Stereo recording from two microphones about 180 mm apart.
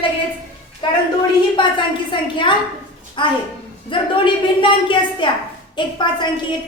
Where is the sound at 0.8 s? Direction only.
25° left (ahead or behind).